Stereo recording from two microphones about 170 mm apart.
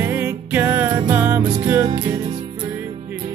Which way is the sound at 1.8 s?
25° right (ahead or behind).